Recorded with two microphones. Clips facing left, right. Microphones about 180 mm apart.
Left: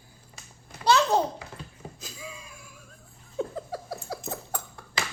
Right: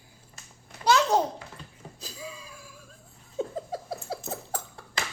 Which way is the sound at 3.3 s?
20° right (ahead or behind).